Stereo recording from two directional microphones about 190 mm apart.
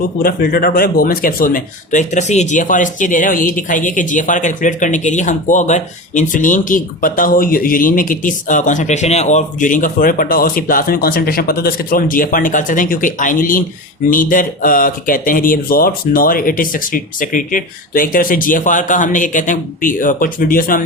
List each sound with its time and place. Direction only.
0.2 s speech: 50° left (ahead or behind)